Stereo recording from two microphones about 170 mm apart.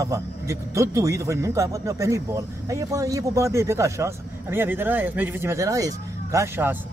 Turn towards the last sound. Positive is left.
turn(degrees=-15)  # may be behind; listen again after turning